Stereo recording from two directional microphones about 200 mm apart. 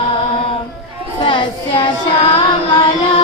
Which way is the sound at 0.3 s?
25° left (ahead or behind).